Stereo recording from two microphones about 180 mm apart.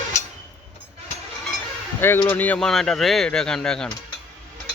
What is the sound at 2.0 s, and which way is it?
Speech, 10° left (ahead or behind).